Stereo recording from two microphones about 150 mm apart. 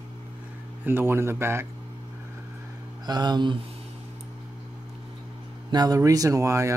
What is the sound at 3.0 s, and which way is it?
Speech, 30° right (ahead or behind).